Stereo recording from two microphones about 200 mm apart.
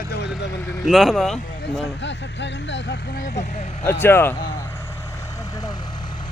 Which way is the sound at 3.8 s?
10° left (ahead or behind).